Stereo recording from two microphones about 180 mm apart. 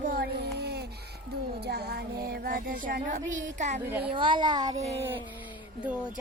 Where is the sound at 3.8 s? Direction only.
10° right (ahead or behind).